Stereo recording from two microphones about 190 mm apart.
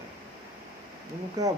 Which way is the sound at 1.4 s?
20° right (ahead or behind).